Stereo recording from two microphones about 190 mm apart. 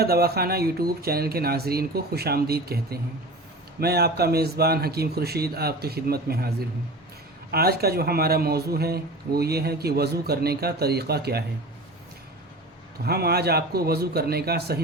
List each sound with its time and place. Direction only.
0.0 s speech: 55° right (ahead or behind)
7.5 s speech: 55° right (ahead or behind)
13.1 s speech: 55° right (ahead or behind)